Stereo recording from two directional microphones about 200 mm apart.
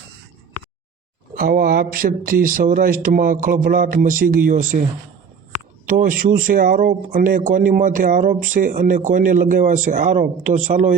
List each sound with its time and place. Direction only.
1.4 s speech: 45° right (ahead or behind)
5.9 s speech: 45° right (ahead or behind)